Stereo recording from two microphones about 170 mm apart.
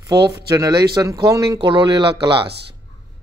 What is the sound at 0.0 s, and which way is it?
Speech, 20° right (ahead or behind).